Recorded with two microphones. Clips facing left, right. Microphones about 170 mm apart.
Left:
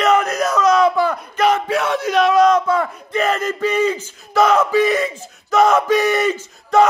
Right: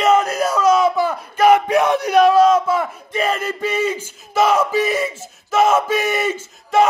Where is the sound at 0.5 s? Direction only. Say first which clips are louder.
Left 1 dB; 5° right (ahead or behind).